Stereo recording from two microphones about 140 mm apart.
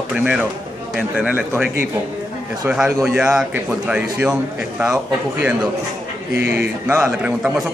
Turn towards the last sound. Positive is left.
turn(degrees=-5)  # may be behind; listen again after turning